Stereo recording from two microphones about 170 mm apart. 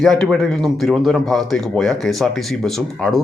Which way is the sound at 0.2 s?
Centre (ahead or behind).